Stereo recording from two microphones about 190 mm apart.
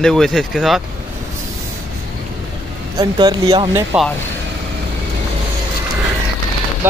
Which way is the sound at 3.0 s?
20° right (ahead or behind).